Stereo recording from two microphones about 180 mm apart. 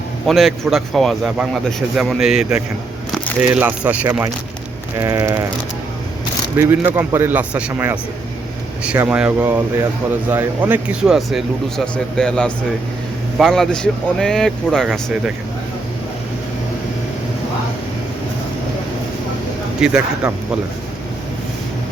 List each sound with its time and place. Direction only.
0.3 s a man's voice: centre (ahead or behind)
6.6 s speech: 10° right (ahead or behind)
9.0 s a man's voice: 5° right (ahead or behind)
19.8 s a man's voice: 5° right (ahead or behind)